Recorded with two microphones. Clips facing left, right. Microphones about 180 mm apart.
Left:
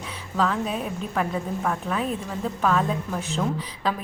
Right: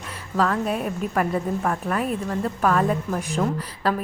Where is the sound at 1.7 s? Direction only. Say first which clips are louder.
Left 1 dB; 5° right (ahead or behind).